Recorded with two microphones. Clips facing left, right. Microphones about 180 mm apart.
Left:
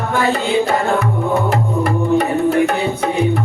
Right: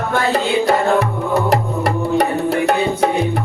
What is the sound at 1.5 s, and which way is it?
Music, 40° right (ahead or behind).